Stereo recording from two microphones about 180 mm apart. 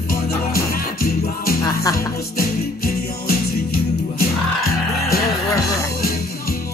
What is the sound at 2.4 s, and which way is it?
Music, 55° left (ahead or behind).